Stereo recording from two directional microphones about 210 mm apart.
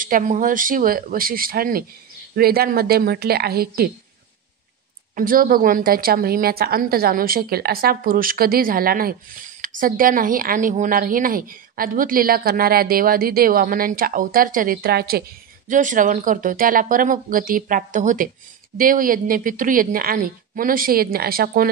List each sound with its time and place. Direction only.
0.0 s speech: 40° right (ahead or behind)
5.1 s speech: 40° right (ahead or behind)
15.7 s a woman's voice: 35° right (ahead or behind)